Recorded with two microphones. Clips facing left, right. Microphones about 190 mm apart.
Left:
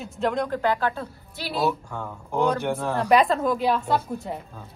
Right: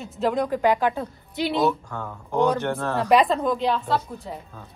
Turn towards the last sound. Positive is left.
turn(degrees=15)  # may be behind; listen again after turning